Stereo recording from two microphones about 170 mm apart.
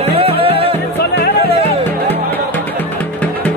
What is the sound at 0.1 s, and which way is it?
Music, 35° right (ahead or behind).